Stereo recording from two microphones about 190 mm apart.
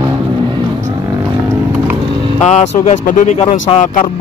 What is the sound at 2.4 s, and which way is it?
Vehicle, 35° left (ahead or behind).